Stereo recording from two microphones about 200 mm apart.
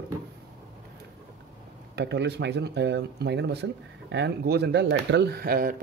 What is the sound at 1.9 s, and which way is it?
Speech, 60° right (ahead or behind).